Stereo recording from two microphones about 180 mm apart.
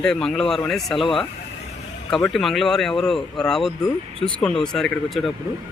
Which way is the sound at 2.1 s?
Centre (ahead or behind).